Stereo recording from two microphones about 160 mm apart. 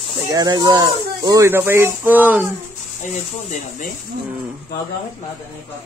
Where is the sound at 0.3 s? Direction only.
25° right (ahead or behind).